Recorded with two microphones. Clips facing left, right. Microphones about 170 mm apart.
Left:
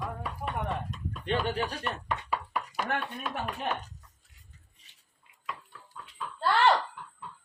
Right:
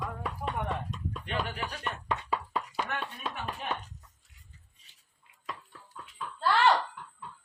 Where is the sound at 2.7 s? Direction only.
45° left (ahead or behind).